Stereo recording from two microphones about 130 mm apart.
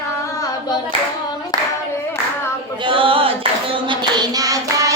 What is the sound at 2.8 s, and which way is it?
Clapping, 40° right (ahead or behind).